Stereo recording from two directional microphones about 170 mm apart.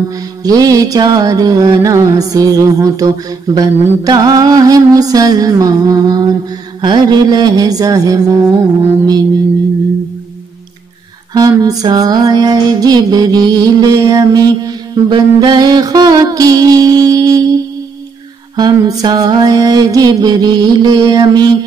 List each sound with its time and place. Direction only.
0.1 s mantra: 20° right (ahead or behind)
11.3 s mantra: 20° right (ahead or behind)
18.6 s mantra: 25° right (ahead or behind)